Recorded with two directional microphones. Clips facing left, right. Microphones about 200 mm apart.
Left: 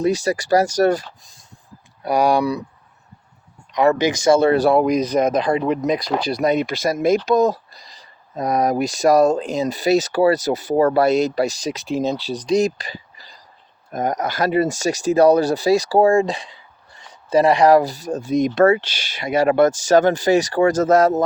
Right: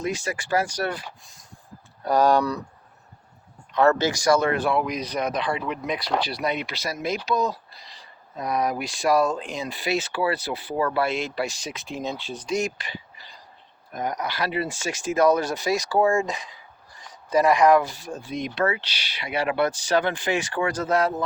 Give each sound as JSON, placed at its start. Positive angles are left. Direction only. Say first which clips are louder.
{"t": 0.0, "sound": "speech", "louder": "left 9 dB", "side_deg": 35}
{"t": 2.0, "sound": "speech", "louder": "left 3 dB", "side_deg": 10}
{"t": 3.7, "sound": "speech", "louder": "left 3 dB", "side_deg": 15}